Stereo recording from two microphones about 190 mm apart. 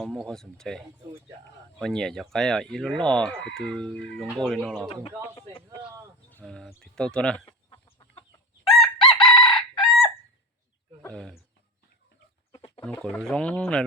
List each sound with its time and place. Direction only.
0.0 s speech: centre (ahead or behind)
6.4 s speech: centre (ahead or behind)
7.4 s chicken: 25° left (ahead or behind)
8.6 s chicken: centre (ahead or behind)
11.1 s speech: centre (ahead or behind)
12.5 s bird: 30° left (ahead or behind)
12.8 s speech: 5° left (ahead or behind)